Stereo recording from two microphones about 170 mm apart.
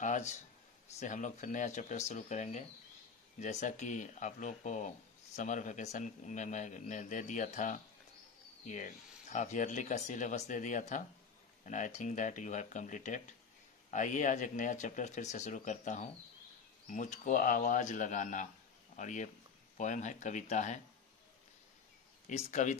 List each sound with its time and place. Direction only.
0.0 s speech: 45° left (ahead or behind)
22.3 s speech: 45° left (ahead or behind)